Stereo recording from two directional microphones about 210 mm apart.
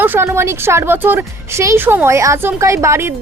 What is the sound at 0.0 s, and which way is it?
A woman's voice, 10° right (ahead or behind).